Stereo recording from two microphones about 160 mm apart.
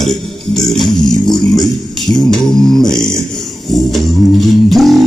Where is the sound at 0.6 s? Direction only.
5° left (ahead or behind).